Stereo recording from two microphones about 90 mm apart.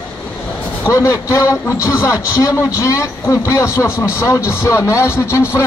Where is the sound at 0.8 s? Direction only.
35° left (ahead or behind).